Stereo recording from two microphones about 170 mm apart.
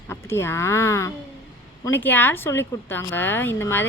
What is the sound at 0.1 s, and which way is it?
A woman's voice, 15° left (ahead or behind).